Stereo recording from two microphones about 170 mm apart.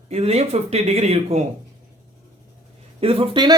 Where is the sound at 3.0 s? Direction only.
35° right (ahead or behind).